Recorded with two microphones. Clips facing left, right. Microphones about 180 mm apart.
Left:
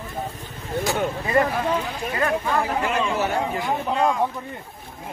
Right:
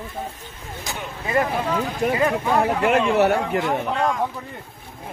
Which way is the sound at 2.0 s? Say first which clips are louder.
Right 6 dB; 70° right (ahead or behind).